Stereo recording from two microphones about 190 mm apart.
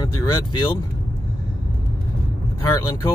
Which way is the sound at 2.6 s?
15° left (ahead or behind).